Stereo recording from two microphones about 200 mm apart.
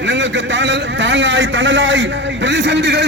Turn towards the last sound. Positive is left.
turn(degrees=-60)  # may be behind; listen again after turning